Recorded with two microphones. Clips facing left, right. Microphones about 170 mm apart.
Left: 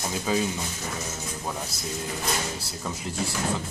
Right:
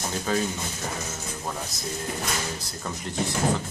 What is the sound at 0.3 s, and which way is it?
Speech, 10° left (ahead or behind).